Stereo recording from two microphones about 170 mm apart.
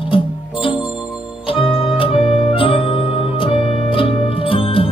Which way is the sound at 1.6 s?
30° left (ahead or behind).